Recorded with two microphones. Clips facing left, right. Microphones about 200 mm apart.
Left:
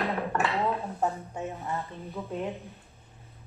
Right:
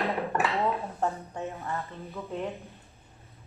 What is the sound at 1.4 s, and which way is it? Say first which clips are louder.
Speech: even; 15° left (ahead or behind).